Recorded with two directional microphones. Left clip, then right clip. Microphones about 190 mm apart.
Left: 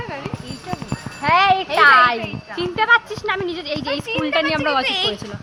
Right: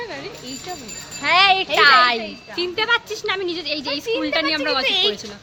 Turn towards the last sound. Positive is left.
turn(degrees=-70)  # may be behind; listen again after turning